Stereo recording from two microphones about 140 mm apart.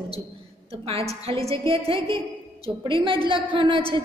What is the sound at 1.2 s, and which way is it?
A woman's voice, 45° right (ahead or behind).